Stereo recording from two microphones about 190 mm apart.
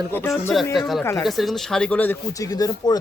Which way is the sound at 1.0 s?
15° left (ahead or behind).